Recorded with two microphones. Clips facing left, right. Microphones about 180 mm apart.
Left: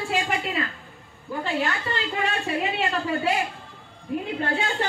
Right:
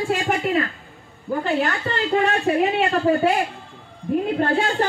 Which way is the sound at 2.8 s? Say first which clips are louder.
Right 7 dB; 40° right (ahead or behind).